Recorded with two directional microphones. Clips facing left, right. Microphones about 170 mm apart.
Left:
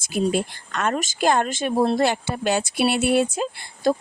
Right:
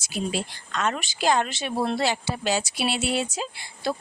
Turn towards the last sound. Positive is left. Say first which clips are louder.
# left 7 dB
turn(degrees=50)  # may be behind; listen again after turning